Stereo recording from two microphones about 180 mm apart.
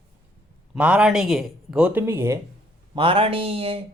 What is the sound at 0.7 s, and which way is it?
Speech, 5° right (ahead or behind).